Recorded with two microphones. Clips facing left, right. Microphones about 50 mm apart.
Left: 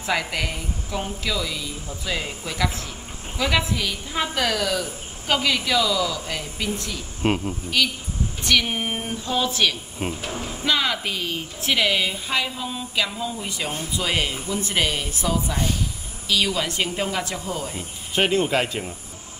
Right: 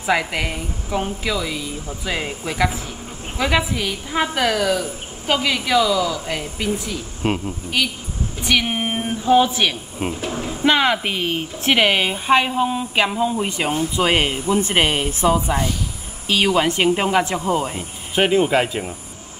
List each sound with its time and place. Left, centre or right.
0.0 s a woman's voice: centre
7.2 s speech: centre
7.8 s a woman's voice: centre
10.0 s speech: centre
10.6 s a woman's voice: right
18.1 s a woman's voice: centre